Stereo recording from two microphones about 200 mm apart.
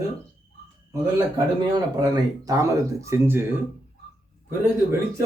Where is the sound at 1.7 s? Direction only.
20° right (ahead or behind).